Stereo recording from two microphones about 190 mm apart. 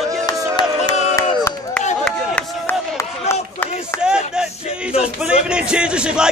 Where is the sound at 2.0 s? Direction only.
10° left (ahead or behind).